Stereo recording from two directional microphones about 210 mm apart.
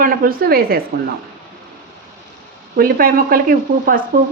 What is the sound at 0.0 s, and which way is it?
Speech, 45° right (ahead or behind).